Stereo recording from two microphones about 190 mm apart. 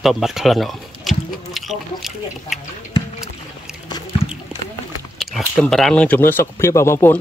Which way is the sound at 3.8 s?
20° left (ahead or behind).